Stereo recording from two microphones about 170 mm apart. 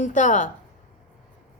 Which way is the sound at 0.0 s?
45° left (ahead or behind).